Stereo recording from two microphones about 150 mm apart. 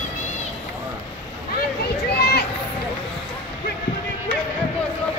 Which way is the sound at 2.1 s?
90° left.